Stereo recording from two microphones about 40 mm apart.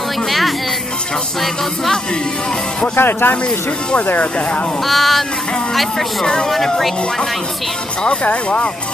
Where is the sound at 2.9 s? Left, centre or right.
Left.